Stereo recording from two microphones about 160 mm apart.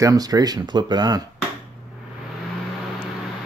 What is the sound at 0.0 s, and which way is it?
Speech, 25° right (ahead or behind).